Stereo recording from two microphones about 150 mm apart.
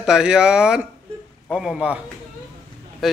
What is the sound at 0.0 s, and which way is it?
A man's voice, 5° right (ahead or behind).